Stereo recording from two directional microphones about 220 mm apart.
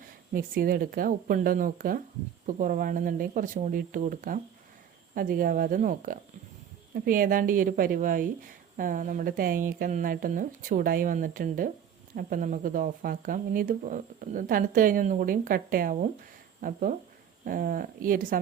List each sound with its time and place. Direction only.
0.3 s speech: 40° right (ahead or behind)